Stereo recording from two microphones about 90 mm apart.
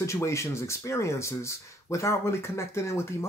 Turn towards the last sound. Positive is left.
turn(degrees=30)  # may be behind; listen again after turning